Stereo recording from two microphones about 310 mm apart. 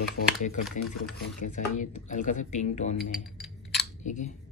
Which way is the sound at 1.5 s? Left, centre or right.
Left.